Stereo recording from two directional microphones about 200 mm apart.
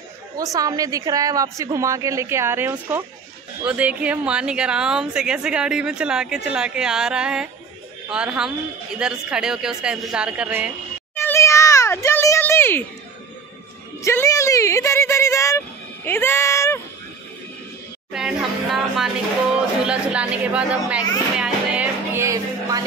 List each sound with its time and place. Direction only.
0.4 s a woman's voice: 15° right (ahead or behind)
11.1 s meow: 15° left (ahead or behind)
14.0 s a sound: 15° left (ahead or behind)
18.1 s a woman's voice: centre (ahead or behind)
21.4 s music: 10° right (ahead or behind)